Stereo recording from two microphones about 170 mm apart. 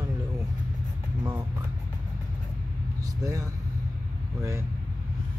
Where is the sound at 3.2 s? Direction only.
20° right (ahead or behind).